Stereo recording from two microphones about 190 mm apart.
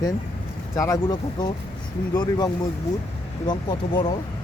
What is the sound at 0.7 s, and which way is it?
Speech, 15° left (ahead or behind).